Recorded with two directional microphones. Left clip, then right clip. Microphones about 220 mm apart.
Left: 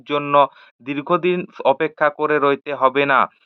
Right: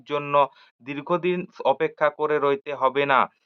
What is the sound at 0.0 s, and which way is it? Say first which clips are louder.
Speech: left 6 dB; 20° left (ahead or behind).